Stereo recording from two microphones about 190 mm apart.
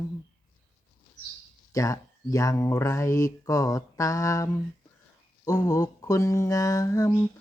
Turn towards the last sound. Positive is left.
turn(degrees=20)  # may be behind; listen again after turning